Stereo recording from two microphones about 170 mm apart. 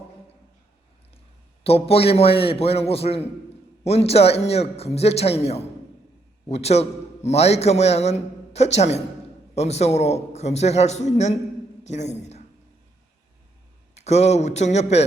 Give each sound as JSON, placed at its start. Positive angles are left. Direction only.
{"t": 1.6, "sound": "a man's voice", "side_deg": 35}
{"t": 13.9, "sound": "a man's voice", "side_deg": 40}